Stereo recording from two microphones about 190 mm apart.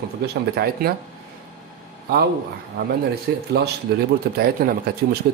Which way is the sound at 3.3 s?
60° right (ahead or behind).